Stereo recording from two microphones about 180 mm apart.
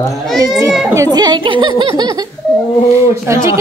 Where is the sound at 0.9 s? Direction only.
20° right (ahead or behind).